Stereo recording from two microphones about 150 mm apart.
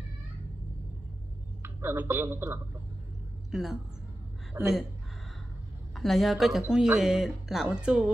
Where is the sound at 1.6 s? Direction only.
15° right (ahead or behind).